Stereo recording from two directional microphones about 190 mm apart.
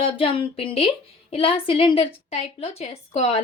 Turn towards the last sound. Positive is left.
turn(degrees=35)  # may be behind; listen again after turning